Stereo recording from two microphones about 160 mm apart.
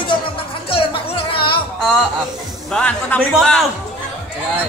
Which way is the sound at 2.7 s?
10° left (ahead or behind).